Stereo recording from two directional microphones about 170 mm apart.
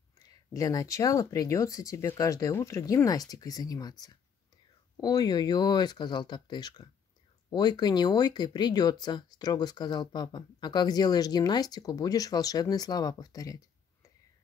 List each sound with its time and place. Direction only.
0.3 s speech: 20° left (ahead or behind)
5.0 s speech: 25° left (ahead or behind)